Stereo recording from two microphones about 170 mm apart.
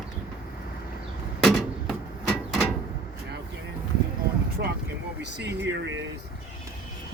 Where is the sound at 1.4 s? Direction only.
5° left (ahead or behind).